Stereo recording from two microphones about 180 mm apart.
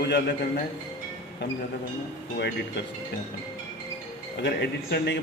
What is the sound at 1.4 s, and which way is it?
Speech, 70° left (ahead or behind).